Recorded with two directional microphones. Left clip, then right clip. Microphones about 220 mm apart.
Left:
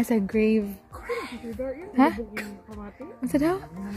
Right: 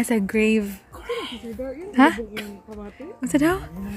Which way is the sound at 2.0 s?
Centre (ahead or behind).